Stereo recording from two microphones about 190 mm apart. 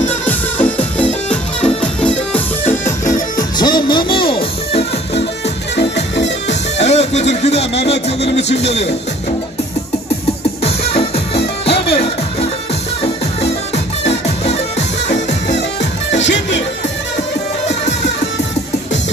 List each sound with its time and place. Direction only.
0.2 s music: 10° left (ahead or behind)
3.5 s music: 20° left (ahead or behind)
5.8 s music: 65° left (ahead or behind)
6.8 s music: 35° left (ahead or behind)
8.2 s speech: 65° left (ahead or behind)
10.6 s music: 30° left (ahead or behind)
14.0 s music: 35° left (ahead or behind)
15.4 s music: 65° left (ahead or behind)